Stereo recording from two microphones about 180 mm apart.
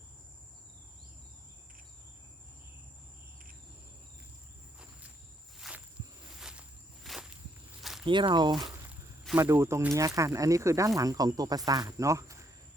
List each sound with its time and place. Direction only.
5.5 s walk: 5° right (ahead or behind)
7.8 s a sound: centre (ahead or behind)
8.0 s speech: 25° right (ahead or behind)
8.9 s speech: 10° right (ahead or behind)